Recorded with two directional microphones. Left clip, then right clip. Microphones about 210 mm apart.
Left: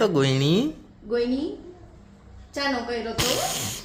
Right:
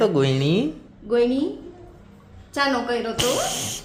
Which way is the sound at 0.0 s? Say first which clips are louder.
Right 2 dB; centre (ahead or behind).